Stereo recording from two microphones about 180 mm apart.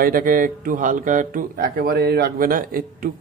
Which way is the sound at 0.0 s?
50° right (ahead or behind).